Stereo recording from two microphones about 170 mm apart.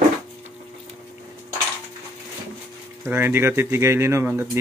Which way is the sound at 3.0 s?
10° right (ahead or behind).